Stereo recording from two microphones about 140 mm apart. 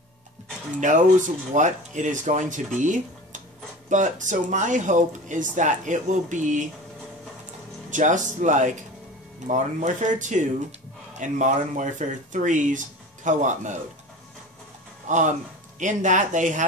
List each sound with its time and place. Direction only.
0.7 s speech: 65° right (ahead or behind)
7.9 s speech: 65° right (ahead or behind)
15.0 s speech: 60° right (ahead or behind)